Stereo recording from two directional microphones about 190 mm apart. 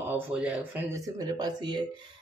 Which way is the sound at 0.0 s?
10° right (ahead or behind).